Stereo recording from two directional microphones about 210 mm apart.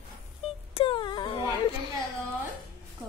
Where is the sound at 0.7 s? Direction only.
25° left (ahead or behind).